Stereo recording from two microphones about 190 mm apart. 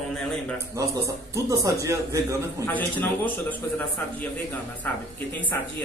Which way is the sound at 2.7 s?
10° left (ahead or behind).